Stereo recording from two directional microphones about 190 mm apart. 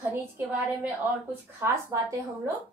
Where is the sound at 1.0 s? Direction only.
10° right (ahead or behind).